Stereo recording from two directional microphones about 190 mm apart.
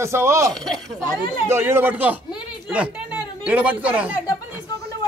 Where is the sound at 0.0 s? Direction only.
15° right (ahead or behind).